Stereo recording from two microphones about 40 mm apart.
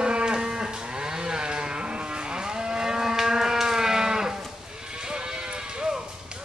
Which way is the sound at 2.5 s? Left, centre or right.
Centre.